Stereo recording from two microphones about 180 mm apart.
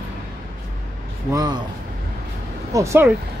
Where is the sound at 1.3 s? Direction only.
20° right (ahead or behind).